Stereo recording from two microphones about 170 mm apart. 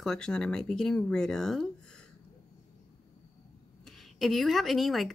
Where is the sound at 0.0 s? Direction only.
5° left (ahead or behind).